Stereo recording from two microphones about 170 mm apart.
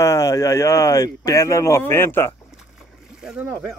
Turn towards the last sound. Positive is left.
turn(degrees=-5)  # may be behind; listen again after turning